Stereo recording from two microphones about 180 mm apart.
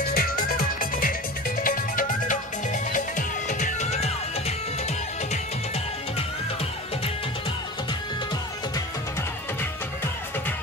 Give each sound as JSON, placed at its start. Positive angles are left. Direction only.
{"t": 0.0, "sound": "music", "side_deg": 55}